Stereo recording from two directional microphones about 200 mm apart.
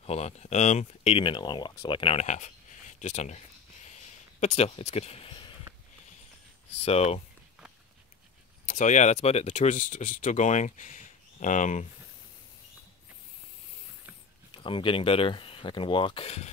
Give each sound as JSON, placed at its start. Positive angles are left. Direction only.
{"t": 0.0, "sound": "speech", "side_deg": 30}
{"t": 3.8, "sound": "a sound", "side_deg": 35}
{"t": 6.8, "sound": "speech", "side_deg": 30}
{"t": 8.6, "sound": "speech", "side_deg": 35}
{"t": 14.5, "sound": "speech", "side_deg": 25}